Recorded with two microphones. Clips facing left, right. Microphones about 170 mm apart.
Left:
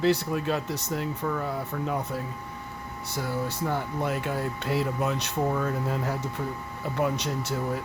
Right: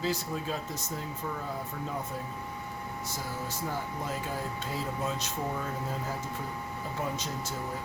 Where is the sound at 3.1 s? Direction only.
65° left (ahead or behind).